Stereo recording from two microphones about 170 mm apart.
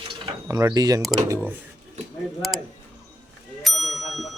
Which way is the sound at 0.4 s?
20° right (ahead or behind).